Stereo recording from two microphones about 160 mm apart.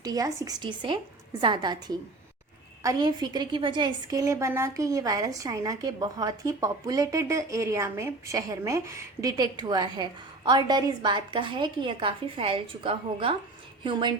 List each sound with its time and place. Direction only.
0.0 s a woman's voice: 20° right (ahead or behind)